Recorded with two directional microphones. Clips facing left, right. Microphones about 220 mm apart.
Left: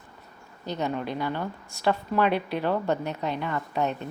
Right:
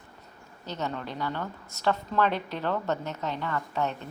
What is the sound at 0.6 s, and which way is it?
A woman's voice, 15° left (ahead or behind).